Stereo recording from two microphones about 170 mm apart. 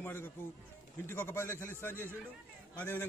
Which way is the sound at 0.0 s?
10° left (ahead or behind).